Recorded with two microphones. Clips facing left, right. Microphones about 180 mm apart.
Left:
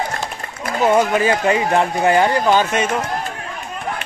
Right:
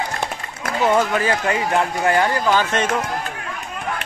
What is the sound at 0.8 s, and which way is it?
Speech, 15° left (ahead or behind).